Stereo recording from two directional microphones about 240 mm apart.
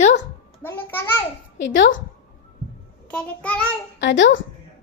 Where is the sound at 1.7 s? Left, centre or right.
Left.